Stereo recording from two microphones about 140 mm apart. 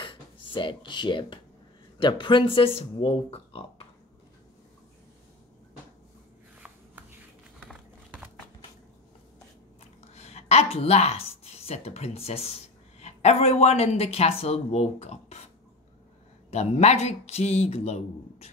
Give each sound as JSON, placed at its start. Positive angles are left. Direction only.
{"t": 0.0, "sound": "speech", "side_deg": 35}
{"t": 7.6, "sound": "a sound", "side_deg": -10}
{"t": 10.1, "sound": "speech", "side_deg": 50}